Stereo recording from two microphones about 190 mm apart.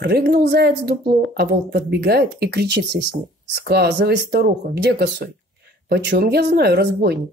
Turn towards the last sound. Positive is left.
turn(degrees=-55)  # may be behind; listen again after turning